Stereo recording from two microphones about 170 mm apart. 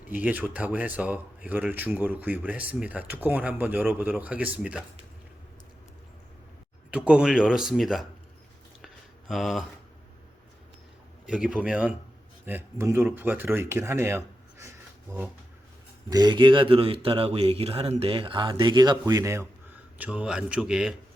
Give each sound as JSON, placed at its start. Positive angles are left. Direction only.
{"t": 0.1, "sound": "speech", "side_deg": -10}
{"t": 6.9, "sound": "speech", "side_deg": -5}
{"t": 9.3, "sound": "speech", "side_deg": 0}
{"t": 11.3, "sound": "speech", "side_deg": -5}
{"t": 14.6, "sound": "a sound", "side_deg": -15}
{"t": 16.0, "sound": "speech", "side_deg": -25}